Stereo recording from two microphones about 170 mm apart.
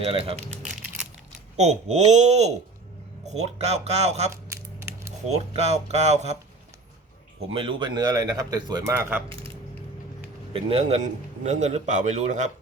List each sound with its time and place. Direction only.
0.0 s speech: 35° right (ahead or behind)
1.5 s speech: 40° right (ahead or behind)
4.4 s a sound: 15° right (ahead or behind)
5.3 s speech: 40° right (ahead or behind)
7.5 s a man's voice: 30° right (ahead or behind); by 9.2 s 15° right (ahead or behind)
10.5 s a man's voice: 35° right (ahead or behind)